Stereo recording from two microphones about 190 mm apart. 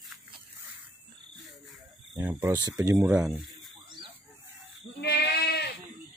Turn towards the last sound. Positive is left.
turn(degrees=60)  # may be behind; listen again after turning